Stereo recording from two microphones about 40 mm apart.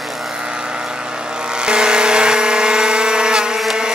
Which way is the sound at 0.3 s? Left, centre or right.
Centre.